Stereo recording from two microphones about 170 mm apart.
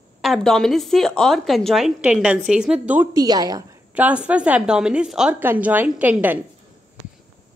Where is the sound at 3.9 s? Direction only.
10° right (ahead or behind).